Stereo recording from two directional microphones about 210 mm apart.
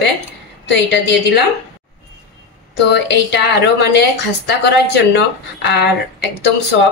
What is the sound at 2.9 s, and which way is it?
A woman's voice, 55° left (ahead or behind).